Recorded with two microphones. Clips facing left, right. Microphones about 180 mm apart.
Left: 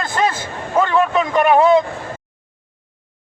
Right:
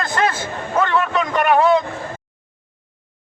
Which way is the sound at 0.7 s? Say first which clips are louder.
Left 3 dB; 10° left (ahead or behind).